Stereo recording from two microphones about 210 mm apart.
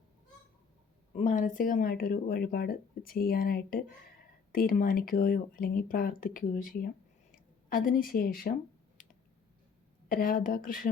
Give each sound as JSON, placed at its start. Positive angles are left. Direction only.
{"t": 1.1, "sound": "speech", "side_deg": 35}
{"t": 10.1, "sound": "speech", "side_deg": 45}